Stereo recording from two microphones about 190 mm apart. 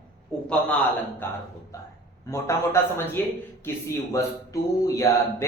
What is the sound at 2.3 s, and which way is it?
A man's voice, 15° left (ahead or behind).